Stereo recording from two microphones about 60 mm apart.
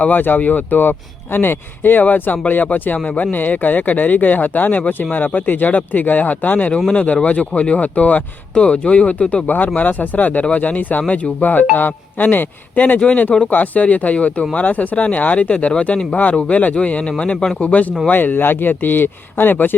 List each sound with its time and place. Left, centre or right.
0.0 s speech: left